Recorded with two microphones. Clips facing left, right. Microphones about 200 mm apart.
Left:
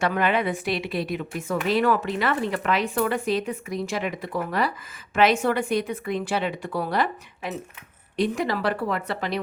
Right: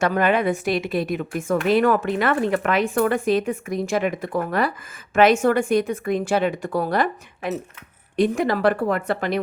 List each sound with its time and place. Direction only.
0.0 s a woman's voice: 45° right (ahead or behind)